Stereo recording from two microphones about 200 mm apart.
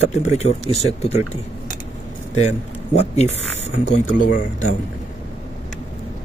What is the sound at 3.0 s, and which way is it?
Speech, 30° left (ahead or behind).